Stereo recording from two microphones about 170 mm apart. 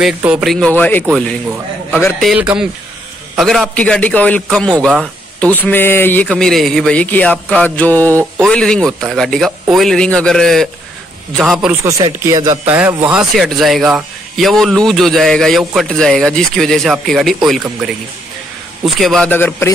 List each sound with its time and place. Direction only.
0.0 s speech: 5° right (ahead or behind)
2.1 s a man's voice: 5° right (ahead or behind)
11.8 s speech: 20° right (ahead or behind); by 17.6 s centre (ahead or behind)
18.9 s speech: centre (ahead or behind)
19.3 s a man's voice: 10° left (ahead or behind)